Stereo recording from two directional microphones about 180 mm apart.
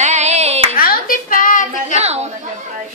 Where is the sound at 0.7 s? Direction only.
55° left (ahead or behind).